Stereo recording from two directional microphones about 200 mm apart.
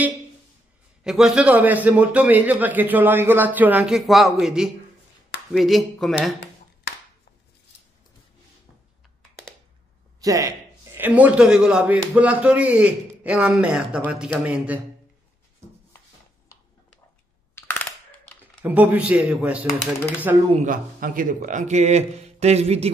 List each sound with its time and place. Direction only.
1.0 s a man's voice: 5° right (ahead or behind)
6.9 s a sound: 55° left (ahead or behind)
10.2 s a man's voice: 15° right (ahead or behind)
17.6 s a sound: 10° left (ahead or behind)
18.6 s a man's voice: 10° right (ahead or behind)
20.5 s speech: 40° right (ahead or behind)